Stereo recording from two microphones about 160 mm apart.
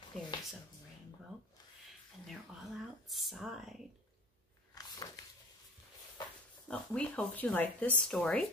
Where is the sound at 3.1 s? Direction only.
Centre (ahead or behind).